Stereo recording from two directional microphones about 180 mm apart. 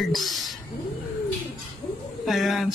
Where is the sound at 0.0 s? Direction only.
Centre (ahead or behind).